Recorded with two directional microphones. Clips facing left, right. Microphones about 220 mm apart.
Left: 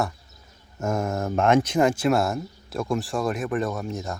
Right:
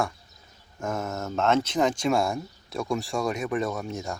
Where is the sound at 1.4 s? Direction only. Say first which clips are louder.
Left 3 dB; 15° left (ahead or behind).